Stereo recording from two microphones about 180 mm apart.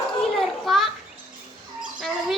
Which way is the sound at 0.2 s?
Centre (ahead or behind).